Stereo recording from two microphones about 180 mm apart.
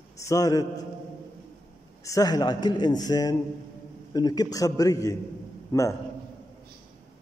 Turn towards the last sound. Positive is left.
turn(degrees=20)  # may be behind; listen again after turning